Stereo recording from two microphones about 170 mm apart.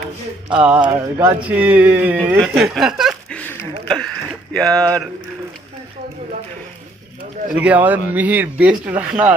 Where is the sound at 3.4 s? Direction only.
15° left (ahead or behind).